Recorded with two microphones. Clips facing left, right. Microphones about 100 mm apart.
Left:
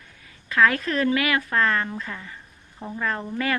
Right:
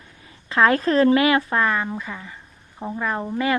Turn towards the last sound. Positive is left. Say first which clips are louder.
# right 4 dB
turn(degrees=-20)  # may be behind; listen again after turning